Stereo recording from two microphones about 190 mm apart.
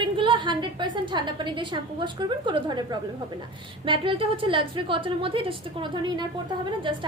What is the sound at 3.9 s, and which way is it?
A woman's voice, 25° right (ahead or behind).